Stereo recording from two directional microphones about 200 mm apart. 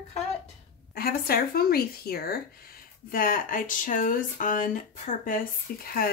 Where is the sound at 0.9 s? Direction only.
50° left (ahead or behind).